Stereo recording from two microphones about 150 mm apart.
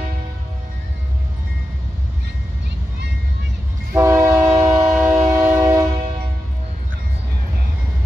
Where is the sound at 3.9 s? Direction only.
20° right (ahead or behind).